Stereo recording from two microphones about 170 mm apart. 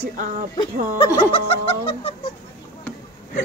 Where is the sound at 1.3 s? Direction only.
35° left (ahead or behind).